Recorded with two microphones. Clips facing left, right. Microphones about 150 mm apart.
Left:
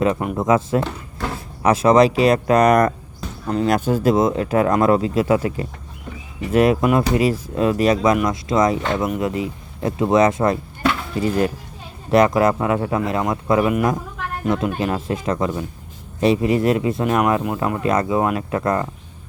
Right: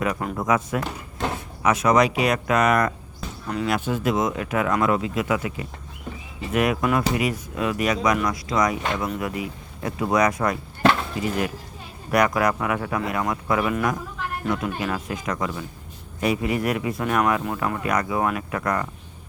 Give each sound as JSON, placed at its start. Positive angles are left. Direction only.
{"t": 0.0, "sound": "speech", "side_deg": 25}